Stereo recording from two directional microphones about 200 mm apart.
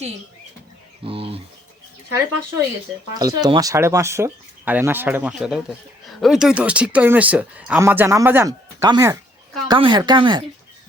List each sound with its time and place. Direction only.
1.0 s speech: 25° right (ahead or behind)
3.2 s speech: 20° right (ahead or behind)